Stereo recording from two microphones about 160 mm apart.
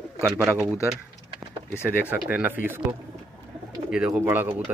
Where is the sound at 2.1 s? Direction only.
10° right (ahead or behind).